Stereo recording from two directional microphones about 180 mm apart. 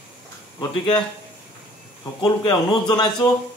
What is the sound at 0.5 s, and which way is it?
Speech, 25° left (ahead or behind).